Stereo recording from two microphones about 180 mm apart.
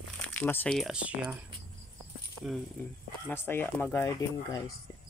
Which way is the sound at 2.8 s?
10° left (ahead or behind).